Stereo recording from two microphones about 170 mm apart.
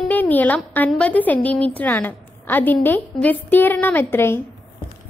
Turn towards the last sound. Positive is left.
turn(degrees=15)  # may be behind; listen again after turning